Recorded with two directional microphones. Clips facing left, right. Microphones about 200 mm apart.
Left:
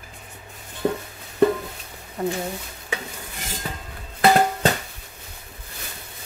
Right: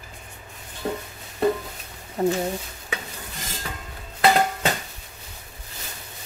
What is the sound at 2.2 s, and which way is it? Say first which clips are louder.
Speech: right 4 dB; 30° right (ahead or behind).